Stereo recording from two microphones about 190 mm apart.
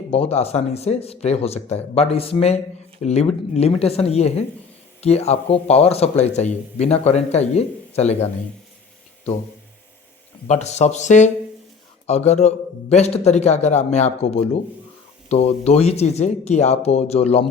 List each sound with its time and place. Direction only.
0.1 s speech: 30° left (ahead or behind)
10.4 s speech: 35° left (ahead or behind)